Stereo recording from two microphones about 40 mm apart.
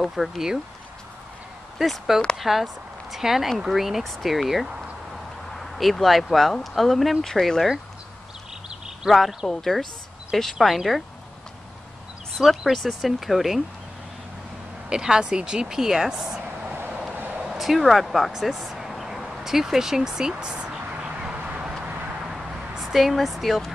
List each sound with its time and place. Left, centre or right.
0.1 s speech: centre
1.8 s speech: centre
4.0 s speech: centre
5.1 s a sound: centre
6.6 s speech: centre
9.1 s speech: centre
9.5 s a woman's voice: centre
12.4 s speech: centre
14.9 s speech: centre
17.6 s speech: centre; by 20.8 s right
21.2 s a sound: right
22.3 s a sound: centre